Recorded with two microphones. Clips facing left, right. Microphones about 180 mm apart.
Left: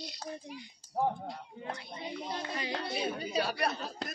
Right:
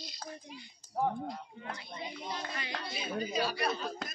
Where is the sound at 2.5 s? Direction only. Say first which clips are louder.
Left 4 dB; 35° left (ahead or behind).